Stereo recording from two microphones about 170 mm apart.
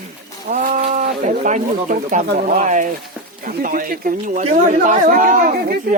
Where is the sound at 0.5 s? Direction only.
50° right (ahead or behind).